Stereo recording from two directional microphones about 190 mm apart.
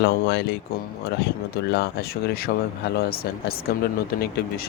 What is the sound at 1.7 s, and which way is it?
Speech, 55° left (ahead or behind).